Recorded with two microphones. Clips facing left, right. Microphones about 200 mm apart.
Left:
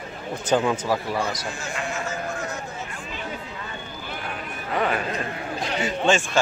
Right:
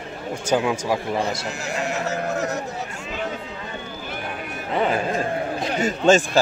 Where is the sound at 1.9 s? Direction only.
40° right (ahead or behind).